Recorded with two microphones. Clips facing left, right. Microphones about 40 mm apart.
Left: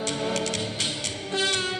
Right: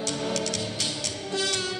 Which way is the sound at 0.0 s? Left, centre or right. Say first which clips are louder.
Left 1 dB; left.